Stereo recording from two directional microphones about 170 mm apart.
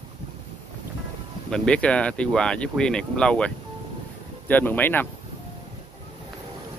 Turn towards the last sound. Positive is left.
turn(degrees=10)  # may be behind; listen again after turning